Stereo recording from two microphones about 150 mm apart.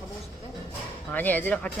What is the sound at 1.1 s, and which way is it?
Speech, 10° left (ahead or behind).